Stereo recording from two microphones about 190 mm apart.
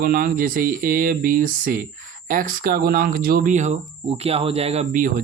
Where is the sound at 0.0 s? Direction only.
50° right (ahead or behind); by 5.0 s 35° right (ahead or behind).